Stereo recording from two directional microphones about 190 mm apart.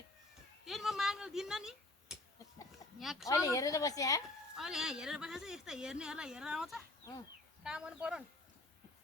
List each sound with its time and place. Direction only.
0.6 s speech: centre (ahead or behind)
3.2 s speech: 15° left (ahead or behind)
4.5 s speech: centre (ahead or behind)